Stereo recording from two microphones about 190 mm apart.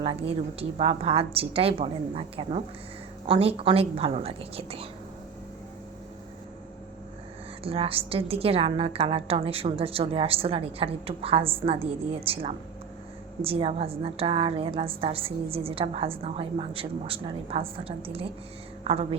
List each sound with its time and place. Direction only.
0.0 s a woman's voice: 30° right (ahead or behind)
7.6 s a woman's voice: 30° right (ahead or behind)